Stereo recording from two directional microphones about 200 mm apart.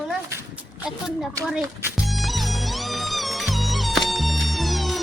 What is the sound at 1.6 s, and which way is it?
Music, 10° right (ahead or behind).